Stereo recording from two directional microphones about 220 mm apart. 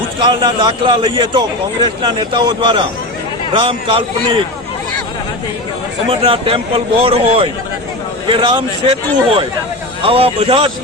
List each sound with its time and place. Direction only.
0.2 s a man's voice: 20° right (ahead or behind)
6.1 s a man's voice: 25° right (ahead or behind)